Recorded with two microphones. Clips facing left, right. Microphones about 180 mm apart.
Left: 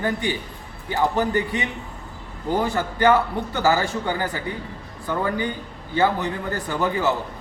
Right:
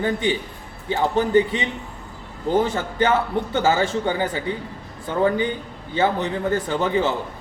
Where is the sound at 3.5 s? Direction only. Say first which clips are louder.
Right 1 dB; 20° right (ahead or behind).